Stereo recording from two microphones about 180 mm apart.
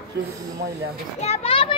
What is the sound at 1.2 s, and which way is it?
Children playing, 35° left (ahead or behind).